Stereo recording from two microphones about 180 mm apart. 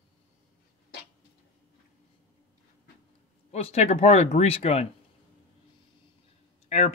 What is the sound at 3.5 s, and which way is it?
Speech, 35° left (ahead or behind).